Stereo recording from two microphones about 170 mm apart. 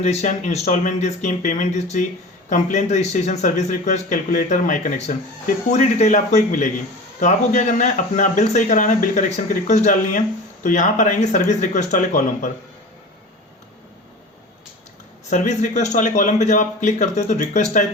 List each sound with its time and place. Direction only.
0.0 s speech: 40° left (ahead or behind)
15.3 s speech: 45° left (ahead or behind)